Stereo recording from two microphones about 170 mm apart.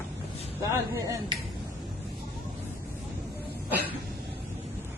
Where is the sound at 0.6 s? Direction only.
20° right (ahead or behind).